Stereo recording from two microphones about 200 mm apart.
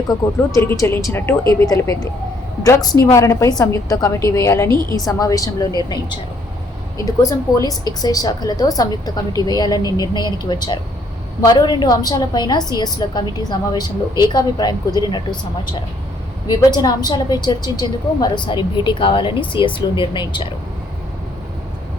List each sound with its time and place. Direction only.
0.1 s speech: 15° left (ahead or behind)
7.0 s a woman's voice: 15° left (ahead or behind)
16.5 s a woman's voice: 20° left (ahead or behind)